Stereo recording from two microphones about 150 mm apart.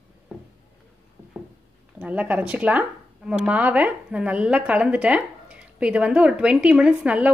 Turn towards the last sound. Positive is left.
turn(degrees=-10)  # may be behind; listen again after turning